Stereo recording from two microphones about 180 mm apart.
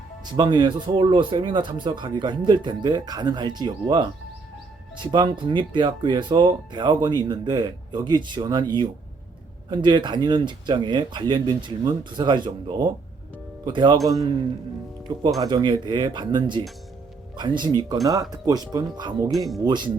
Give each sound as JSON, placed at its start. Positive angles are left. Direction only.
{"t": 0.3, "sound": "speech", "side_deg": -25}
{"t": 15.4, "sound": "speech", "side_deg": -25}